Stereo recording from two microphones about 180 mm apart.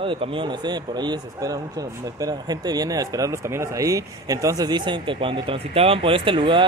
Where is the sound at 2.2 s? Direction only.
20° right (ahead or behind).